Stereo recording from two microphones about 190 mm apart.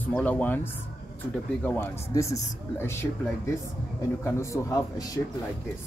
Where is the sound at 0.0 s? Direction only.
10° left (ahead or behind).